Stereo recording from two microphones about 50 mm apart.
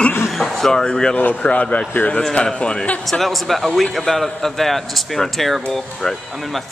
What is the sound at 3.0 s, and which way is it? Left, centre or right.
Speech, centre.